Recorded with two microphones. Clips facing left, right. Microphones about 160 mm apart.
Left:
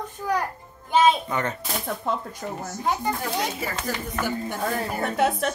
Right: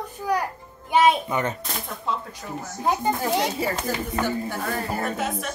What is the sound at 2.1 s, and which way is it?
Speech, 50° left (ahead or behind).